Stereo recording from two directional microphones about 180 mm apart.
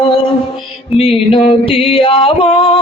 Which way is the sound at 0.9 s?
30° left (ahead or behind).